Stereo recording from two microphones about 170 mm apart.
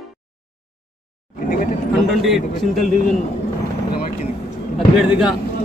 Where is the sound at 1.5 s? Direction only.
55° left (ahead or behind).